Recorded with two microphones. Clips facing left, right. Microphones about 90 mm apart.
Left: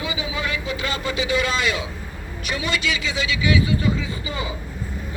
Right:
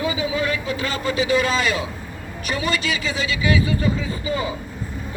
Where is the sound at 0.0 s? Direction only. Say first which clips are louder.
Right 5 dB; 40° right (ahead or behind).